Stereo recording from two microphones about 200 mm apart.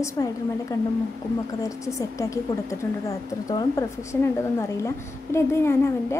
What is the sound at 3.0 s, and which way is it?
A woman's voice, 15° left (ahead or behind).